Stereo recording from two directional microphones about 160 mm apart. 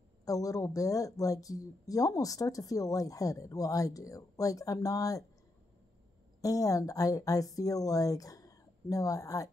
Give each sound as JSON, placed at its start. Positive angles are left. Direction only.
{"t": 0.2, "sound": "speech", "side_deg": 20}
{"t": 6.4, "sound": "speech", "side_deg": 20}